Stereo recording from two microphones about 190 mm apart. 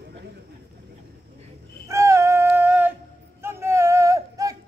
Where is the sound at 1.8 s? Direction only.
15° right (ahead or behind).